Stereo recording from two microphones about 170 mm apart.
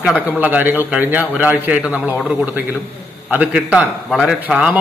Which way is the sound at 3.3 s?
5° right (ahead or behind).